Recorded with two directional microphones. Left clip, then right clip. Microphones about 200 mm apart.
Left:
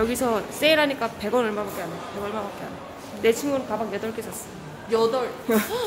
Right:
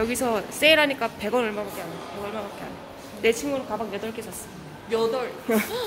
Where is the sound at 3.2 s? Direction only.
Centre (ahead or behind).